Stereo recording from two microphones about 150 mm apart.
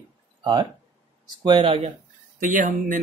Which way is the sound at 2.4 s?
60° right (ahead or behind).